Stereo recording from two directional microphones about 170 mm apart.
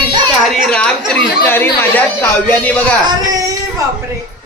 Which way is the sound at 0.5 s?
5° left (ahead or behind).